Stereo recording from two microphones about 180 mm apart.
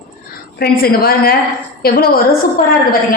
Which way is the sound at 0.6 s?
55° left (ahead or behind).